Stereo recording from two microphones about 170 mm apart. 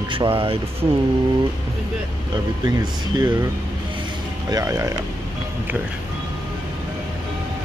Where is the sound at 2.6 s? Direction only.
25° right (ahead or behind).